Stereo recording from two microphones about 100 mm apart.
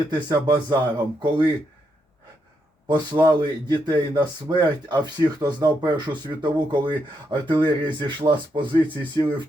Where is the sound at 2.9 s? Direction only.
45° right (ahead or behind).